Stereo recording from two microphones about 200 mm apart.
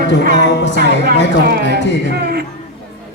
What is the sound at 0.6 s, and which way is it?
Speech, 60° left (ahead or behind).